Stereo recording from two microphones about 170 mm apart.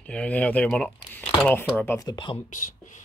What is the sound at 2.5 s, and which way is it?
Speech, 50° left (ahead or behind).